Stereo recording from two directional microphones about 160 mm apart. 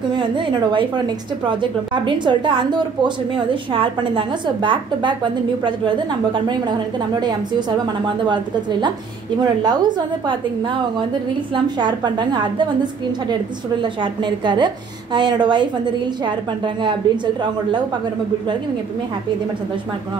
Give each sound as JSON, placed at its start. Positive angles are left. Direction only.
{"t": 0.1, "sound": "a woman's voice", "side_deg": -30}
{"t": 9.4, "sound": "a woman's voice", "side_deg": -25}
{"t": 11.5, "sound": "a woman's voice", "side_deg": -25}
{"t": 14.2, "sound": "a woman's voice", "side_deg": -30}